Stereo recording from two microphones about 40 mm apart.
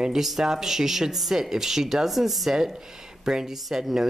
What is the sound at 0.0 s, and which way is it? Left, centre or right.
A woman's voice, centre.